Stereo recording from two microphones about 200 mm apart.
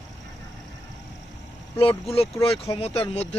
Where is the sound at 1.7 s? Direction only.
30° left (ahead or behind).